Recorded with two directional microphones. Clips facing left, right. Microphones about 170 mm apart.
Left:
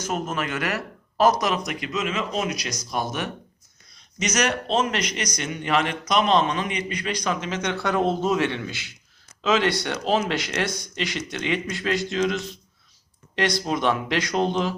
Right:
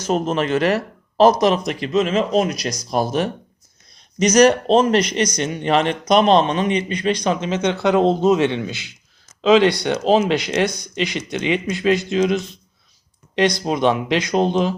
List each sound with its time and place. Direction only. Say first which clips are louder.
0.1 s speech: right 10 dB; 30° right (ahead or behind)